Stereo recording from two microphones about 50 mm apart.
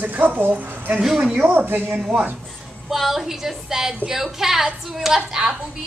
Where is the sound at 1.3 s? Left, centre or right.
Right.